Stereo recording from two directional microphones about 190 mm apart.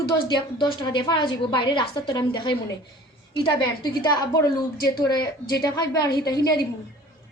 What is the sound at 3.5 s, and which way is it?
Speech, 25° left (ahead or behind).